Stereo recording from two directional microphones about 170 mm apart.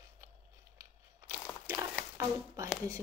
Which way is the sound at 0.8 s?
20° right (ahead or behind).